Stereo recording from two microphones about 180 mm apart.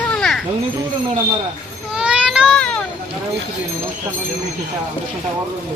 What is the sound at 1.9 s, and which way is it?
Baby cry, 5° right (ahead or behind).